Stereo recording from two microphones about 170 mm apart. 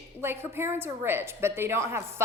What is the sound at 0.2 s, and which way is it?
A woman's voice, 15° right (ahead or behind).